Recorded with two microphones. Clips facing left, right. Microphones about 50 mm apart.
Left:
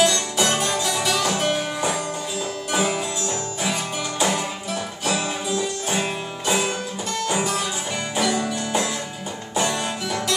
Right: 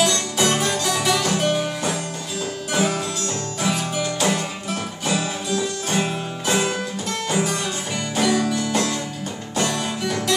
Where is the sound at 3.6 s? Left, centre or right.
Centre.